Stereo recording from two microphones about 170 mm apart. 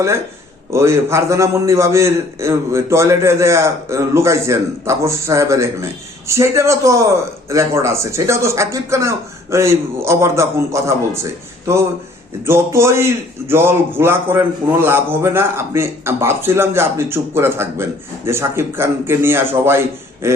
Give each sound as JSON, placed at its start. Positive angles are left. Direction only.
{"t": 0.7, "sound": "a man's voice", "side_deg": -15}